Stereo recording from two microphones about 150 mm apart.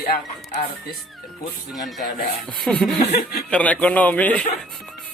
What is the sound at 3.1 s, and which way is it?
Speech, 90° left.